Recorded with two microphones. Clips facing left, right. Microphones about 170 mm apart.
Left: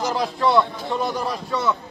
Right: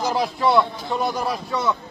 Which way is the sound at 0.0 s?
15° right (ahead or behind).